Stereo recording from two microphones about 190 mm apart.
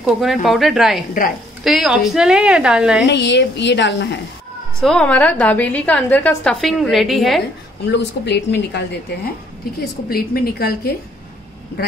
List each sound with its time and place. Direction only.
0.0 s a woman's voice: centre (ahead or behind)
3.1 s a woman's voice: 65° left (ahead or behind)
4.7 s a woman's voice: 5° left (ahead or behind)
7.9 s a woman's voice: 65° left (ahead or behind)
9.8 s a woman's voice: 50° left (ahead or behind)